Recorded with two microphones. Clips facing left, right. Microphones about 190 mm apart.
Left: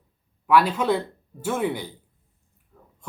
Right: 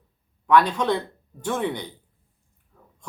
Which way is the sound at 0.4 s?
5° left (ahead or behind).